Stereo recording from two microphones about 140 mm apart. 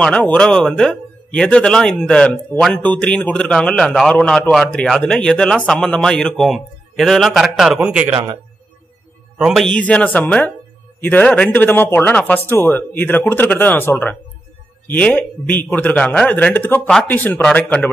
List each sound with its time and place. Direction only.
0.0 s speech: 10° left (ahead or behind); by 8.1 s 10° right (ahead or behind)
8.1 s a man's voice: 25° right (ahead or behind)
9.4 s a man's voice: centre (ahead or behind)